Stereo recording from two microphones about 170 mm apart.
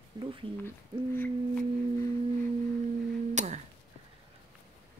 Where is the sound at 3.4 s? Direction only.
45° right (ahead or behind).